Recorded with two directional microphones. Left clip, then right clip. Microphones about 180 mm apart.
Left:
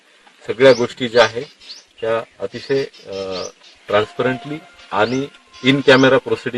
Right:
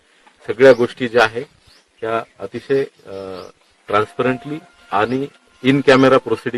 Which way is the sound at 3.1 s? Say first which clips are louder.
Left 4 dB; 15° right (ahead or behind).